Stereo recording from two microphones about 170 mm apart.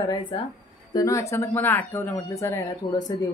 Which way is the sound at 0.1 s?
30° left (ahead or behind).